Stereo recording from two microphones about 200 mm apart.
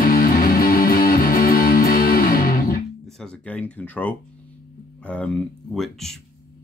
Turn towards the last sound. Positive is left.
turn(degrees=0)  # may be behind; listen again after turning